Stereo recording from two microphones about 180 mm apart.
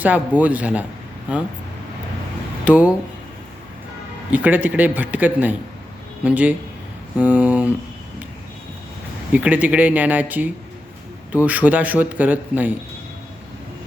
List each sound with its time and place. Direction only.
0.0 s a man's voice: 10° right (ahead or behind)
2.6 s a man's voice: 10° right (ahead or behind)
4.3 s a man's voice: 10° right (ahead or behind)
9.3 s a man's voice: 10° right (ahead or behind)